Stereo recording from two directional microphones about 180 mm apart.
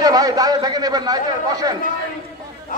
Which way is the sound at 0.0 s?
20° right (ahead or behind).